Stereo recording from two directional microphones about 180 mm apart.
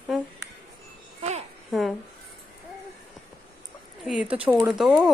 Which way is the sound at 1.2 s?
40° right (ahead or behind).